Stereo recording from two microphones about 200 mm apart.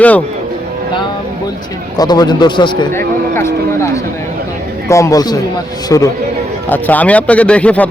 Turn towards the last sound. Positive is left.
turn(degrees=5)  # may be behind; listen again after turning